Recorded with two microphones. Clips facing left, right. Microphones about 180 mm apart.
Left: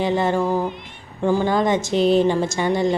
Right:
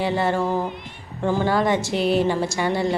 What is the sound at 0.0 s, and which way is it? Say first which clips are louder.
A woman's voice: left 2 dB; 20° left (ahead or behind).